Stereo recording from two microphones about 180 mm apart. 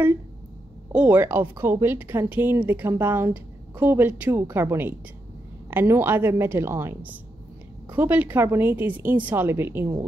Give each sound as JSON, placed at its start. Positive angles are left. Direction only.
{"t": 0.9, "sound": "speech", "side_deg": -10}